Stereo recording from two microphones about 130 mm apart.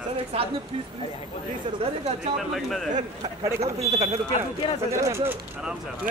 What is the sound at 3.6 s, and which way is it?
Speech, 55° right (ahead or behind).